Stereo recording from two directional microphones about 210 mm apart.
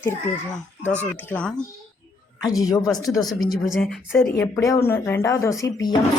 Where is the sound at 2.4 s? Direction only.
15° left (ahead or behind).